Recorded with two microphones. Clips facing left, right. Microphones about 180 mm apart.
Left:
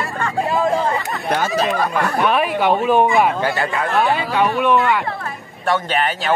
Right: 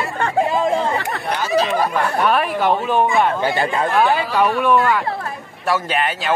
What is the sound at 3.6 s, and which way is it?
Speech, 25° right (ahead or behind).